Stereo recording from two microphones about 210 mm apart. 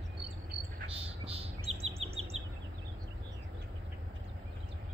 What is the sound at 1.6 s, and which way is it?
Chirp, 30° right (ahead or behind).